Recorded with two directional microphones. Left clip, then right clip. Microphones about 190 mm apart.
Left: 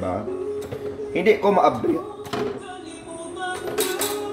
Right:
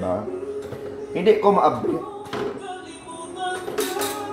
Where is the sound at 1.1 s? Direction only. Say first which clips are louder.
Right 1 dB; centre (ahead or behind).